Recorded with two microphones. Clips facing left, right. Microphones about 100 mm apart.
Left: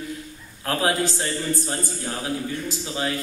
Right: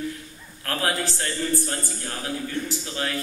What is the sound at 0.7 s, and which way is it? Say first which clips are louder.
A man's voice: left 4 dB; 20° left (ahead or behind).